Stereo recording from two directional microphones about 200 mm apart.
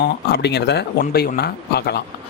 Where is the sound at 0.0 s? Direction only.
55° left (ahead or behind).